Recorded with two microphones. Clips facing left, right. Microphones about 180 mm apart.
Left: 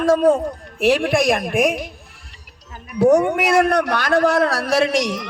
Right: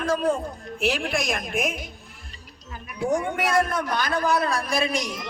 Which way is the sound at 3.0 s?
75° left (ahead or behind).